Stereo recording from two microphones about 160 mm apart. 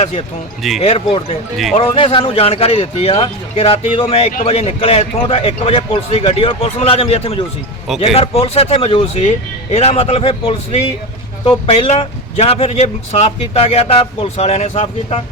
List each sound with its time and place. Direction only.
0.0 s speech: 40° left (ahead or behind)